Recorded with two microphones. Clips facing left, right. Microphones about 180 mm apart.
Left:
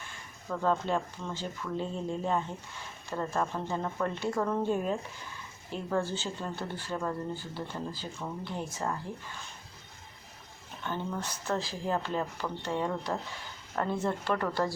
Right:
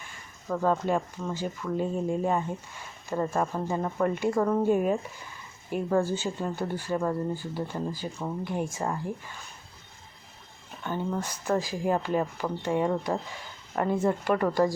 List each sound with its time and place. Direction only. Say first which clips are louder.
0.4 s speech: right 4 dB; 15° right (ahead or behind)
10.8 s speech: right 4 dB; 10° right (ahead or behind)